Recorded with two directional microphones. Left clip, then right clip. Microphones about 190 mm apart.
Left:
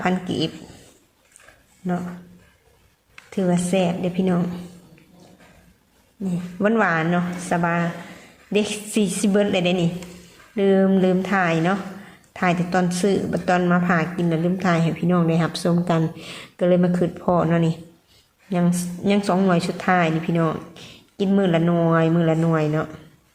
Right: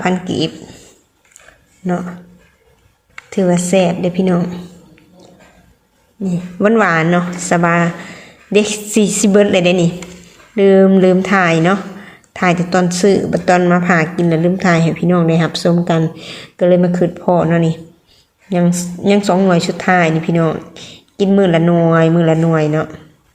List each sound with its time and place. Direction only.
0.0 s speech: 5° right (ahead or behind)
3.2 s a woman's voice: 15° right (ahead or behind)
6.2 s a woman's voice: 10° right (ahead or behind)